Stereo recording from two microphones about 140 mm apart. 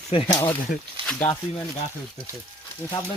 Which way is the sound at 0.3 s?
30° left (ahead or behind).